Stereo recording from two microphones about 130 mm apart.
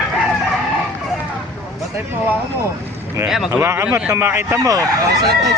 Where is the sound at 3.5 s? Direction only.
15° right (ahead or behind).